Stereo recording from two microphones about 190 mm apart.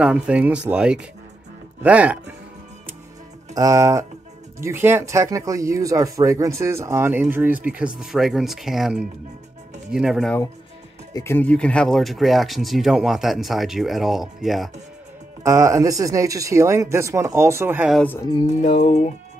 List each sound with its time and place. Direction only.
0.0 s speech: 5° right (ahead or behind)
3.5 s speech: 15° right (ahead or behind)
11.1 s speech: 10° left (ahead or behind)
15.4 s speech: 15° right (ahead or behind)
17.9 s speech: 10° left (ahead or behind)
18.6 s music: 40° left (ahead or behind)